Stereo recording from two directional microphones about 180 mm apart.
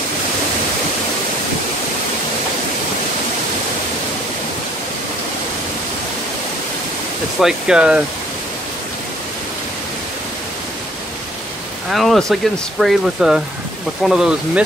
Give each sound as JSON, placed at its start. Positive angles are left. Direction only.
{"t": 7.3, "sound": "speech", "side_deg": -5}
{"t": 11.9, "sound": "speech", "side_deg": 0}